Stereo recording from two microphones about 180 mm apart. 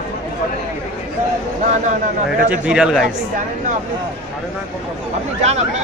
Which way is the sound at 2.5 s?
5° right (ahead or behind).